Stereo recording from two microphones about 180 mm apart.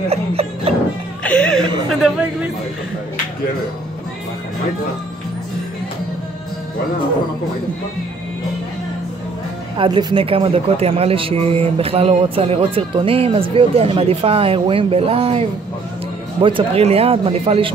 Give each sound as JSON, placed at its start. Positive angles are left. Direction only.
{"t": 0.1, "sound": "music", "side_deg": -35}
{"t": 1.2, "sound": "chuckle", "side_deg": 5}
{"t": 9.8, "sound": "a man's voice", "side_deg": -25}